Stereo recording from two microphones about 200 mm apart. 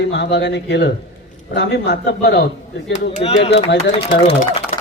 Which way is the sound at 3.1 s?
35° left (ahead or behind).